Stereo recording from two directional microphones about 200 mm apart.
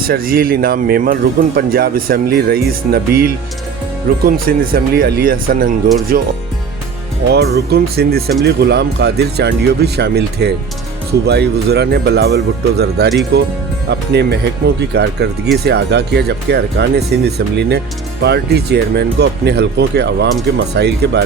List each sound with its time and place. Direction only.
0.0 s speech: 45° right (ahead or behind)